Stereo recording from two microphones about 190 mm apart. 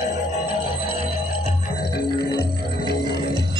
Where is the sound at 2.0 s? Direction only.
55° left (ahead or behind).